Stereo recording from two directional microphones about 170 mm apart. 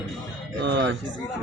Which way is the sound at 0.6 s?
90° right.